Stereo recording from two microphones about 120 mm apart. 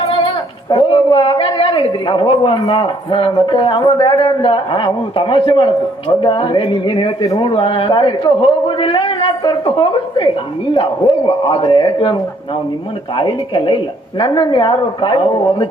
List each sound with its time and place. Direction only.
0.7 s a woman's voice: 45° left (ahead or behind)